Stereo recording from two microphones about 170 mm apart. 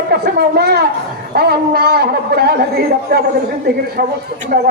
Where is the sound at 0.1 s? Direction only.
70° right (ahead or behind).